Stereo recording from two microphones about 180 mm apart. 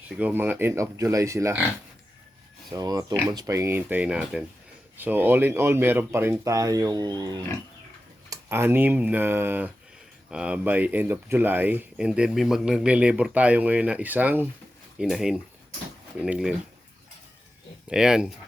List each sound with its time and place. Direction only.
0.2 s speech: 10° right (ahead or behind)
2.6 s speech: 20° right (ahead or behind); by 16.6 s 5° right (ahead or behind)
17.8 s speech: 5° right (ahead or behind)